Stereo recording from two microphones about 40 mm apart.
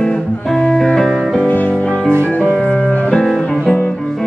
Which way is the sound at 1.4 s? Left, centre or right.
Left.